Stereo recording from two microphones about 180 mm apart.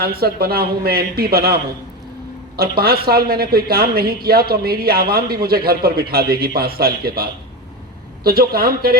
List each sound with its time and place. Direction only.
0.0 s speech: 60° right (ahead or behind)
2.6 s speech: 60° right (ahead or behind)